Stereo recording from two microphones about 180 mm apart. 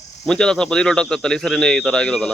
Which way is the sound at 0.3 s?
5° left (ahead or behind).